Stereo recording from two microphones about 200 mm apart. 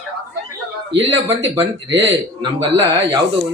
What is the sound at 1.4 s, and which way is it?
A man's voice, 20° right (ahead or behind).